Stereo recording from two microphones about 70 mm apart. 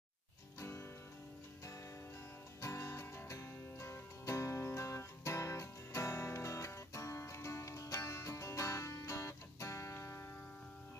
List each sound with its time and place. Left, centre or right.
0.6 s music: left
2.6 s music: left